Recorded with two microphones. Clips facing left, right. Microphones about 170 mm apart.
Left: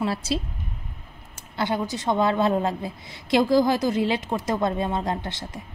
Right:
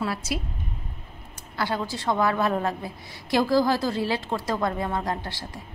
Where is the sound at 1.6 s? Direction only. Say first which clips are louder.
Left 2 dB; 20° left (ahead or behind).